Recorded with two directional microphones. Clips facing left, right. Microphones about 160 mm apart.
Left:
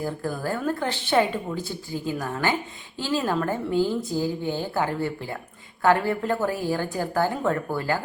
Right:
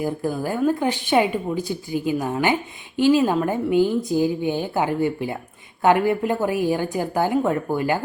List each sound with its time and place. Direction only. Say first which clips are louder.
0.0 s speech: right 4 dB; 15° right (ahead or behind)